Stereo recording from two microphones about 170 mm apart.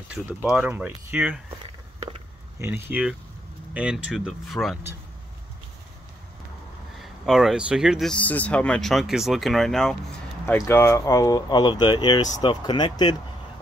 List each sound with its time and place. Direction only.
0.1 s speech: 5° right (ahead or behind)
2.6 s speech: 10° right (ahead or behind)
7.0 s speech: centre (ahead or behind)
10.4 s speech: 15° left (ahead or behind)